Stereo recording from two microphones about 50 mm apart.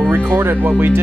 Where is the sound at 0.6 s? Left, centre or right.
Right.